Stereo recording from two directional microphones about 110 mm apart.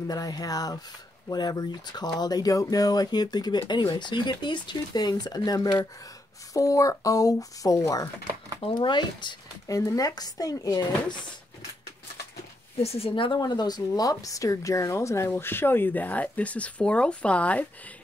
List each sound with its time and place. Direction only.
0.1 s speech: 35° left (ahead or behind)
8.5 s speech: 50° left (ahead or behind)
9.7 s speech: 30° left (ahead or behind)
12.8 s speech: 65° left (ahead or behind)
13.1 s speech: 45° left (ahead or behind); by 17.6 s 10° left (ahead or behind)